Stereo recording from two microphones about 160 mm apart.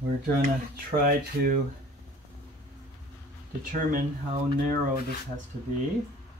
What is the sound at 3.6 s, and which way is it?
Speech, 60° right (ahead or behind).